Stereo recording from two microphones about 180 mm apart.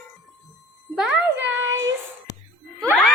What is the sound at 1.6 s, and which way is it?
Child singing, 15° right (ahead or behind).